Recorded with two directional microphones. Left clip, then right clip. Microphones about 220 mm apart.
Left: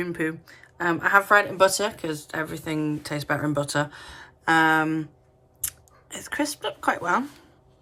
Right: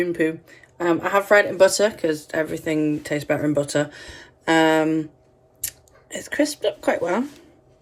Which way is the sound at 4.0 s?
20° left (ahead or behind).